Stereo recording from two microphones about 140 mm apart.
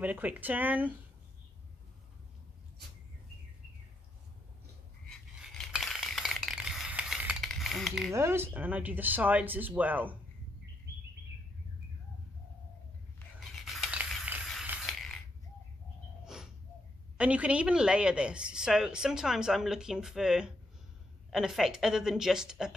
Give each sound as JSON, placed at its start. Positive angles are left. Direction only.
{"t": 0.0, "sound": "speech", "side_deg": -10}
{"t": 5.0, "sound": "coin", "side_deg": 0}
{"t": 7.4, "sound": "a sound", "side_deg": 0}
{"t": 8.1, "sound": "speech", "side_deg": -20}
{"t": 13.4, "sound": "a sound", "side_deg": 0}
{"t": 14.3, "sound": "mechanisms", "side_deg": -5}
{"t": 17.2, "sound": "a woman's voice", "side_deg": -10}